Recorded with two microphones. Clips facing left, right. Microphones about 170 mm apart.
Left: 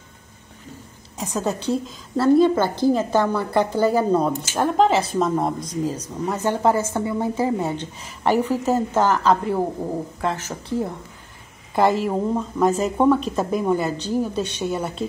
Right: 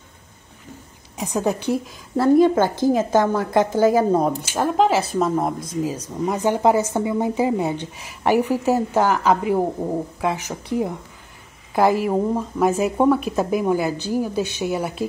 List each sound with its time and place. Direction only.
1.1 s speech: 15° right (ahead or behind)
6.2 s speech: 15° right (ahead or behind)